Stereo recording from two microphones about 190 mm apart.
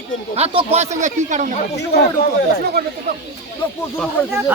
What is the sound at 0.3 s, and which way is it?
Speech, 30° right (ahead or behind).